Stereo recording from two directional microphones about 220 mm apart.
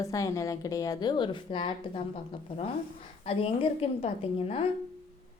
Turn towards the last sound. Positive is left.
turn(degrees=25)  # may be behind; listen again after turning